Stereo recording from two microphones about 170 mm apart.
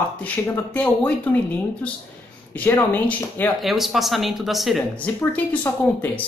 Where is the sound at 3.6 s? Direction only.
Centre (ahead or behind).